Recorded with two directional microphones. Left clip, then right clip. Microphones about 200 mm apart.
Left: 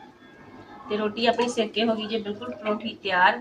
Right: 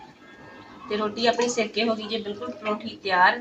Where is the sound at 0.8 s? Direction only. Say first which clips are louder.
Even; 5° left (ahead or behind).